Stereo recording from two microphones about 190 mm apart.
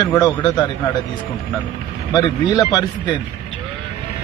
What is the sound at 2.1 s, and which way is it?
A man's voice, 20° left (ahead or behind).